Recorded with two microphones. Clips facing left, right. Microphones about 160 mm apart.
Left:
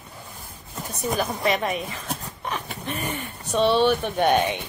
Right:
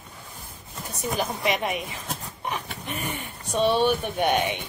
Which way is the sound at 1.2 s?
15° right (ahead or behind).